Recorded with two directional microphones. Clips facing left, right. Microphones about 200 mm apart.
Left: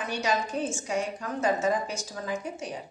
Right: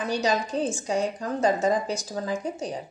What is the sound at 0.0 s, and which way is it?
A woman's voice, 35° right (ahead or behind).